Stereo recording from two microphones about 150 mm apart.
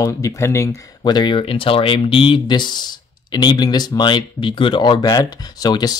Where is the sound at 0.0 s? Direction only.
20° left (ahead or behind).